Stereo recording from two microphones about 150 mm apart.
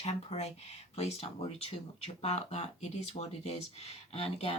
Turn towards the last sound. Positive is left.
turn(degrees=40)  # may be behind; listen again after turning